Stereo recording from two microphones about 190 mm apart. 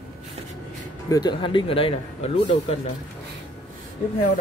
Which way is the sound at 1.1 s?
25° left (ahead or behind).